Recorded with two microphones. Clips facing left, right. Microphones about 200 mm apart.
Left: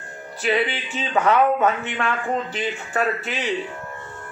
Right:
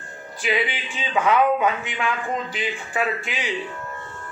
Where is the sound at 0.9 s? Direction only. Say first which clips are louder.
Left 1 dB; 40° left (ahead or behind).